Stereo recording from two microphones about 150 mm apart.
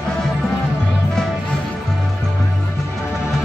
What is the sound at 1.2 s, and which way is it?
Music, 5° left (ahead or behind).